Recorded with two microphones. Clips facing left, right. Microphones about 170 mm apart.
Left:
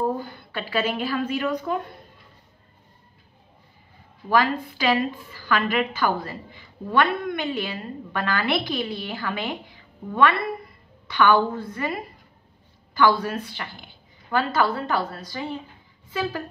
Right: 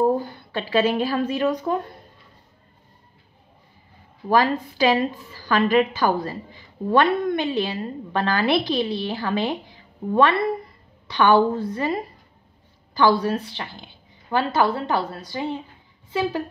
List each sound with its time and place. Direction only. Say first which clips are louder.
0.2 s a woman's voice: right 3 dB; 30° right (ahead or behind)
4.3 s a woman's voice: right 2 dB; 35° right (ahead or behind)
11.1 s a woman's voice: right 2 dB; 30° right (ahead or behind)